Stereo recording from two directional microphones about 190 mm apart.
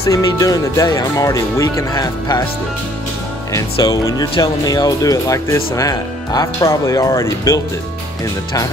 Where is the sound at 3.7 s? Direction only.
20° left (ahead or behind).